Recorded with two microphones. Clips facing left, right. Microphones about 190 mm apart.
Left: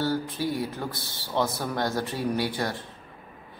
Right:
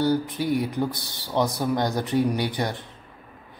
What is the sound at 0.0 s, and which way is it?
Speech, 15° right (ahead or behind).